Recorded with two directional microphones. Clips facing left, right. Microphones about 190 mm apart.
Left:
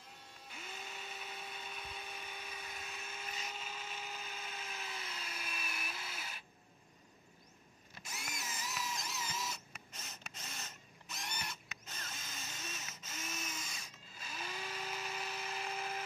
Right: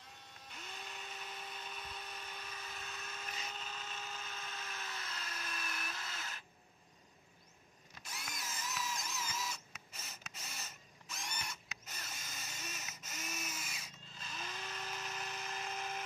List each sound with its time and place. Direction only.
0.5 s dental drill: 5° left (ahead or behind)
8.1 s drill: centre (ahead or behind)
10.0 s a sound: 5° right (ahead or behind)
11.1 s drill: 5° left (ahead or behind)
11.9 s drill: 10° right (ahead or behind)
14.1 s a sound: 10° left (ahead or behind)